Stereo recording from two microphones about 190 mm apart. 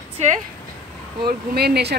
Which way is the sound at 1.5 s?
55° right (ahead or behind).